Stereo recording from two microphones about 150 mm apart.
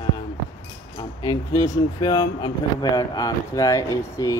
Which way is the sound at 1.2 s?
25° left (ahead or behind).